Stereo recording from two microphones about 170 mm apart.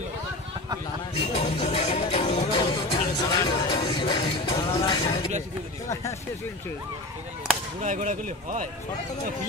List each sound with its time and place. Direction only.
1.3 s music: 35° left (ahead or behind)
7.8 s a man's voice: 45° right (ahead or behind)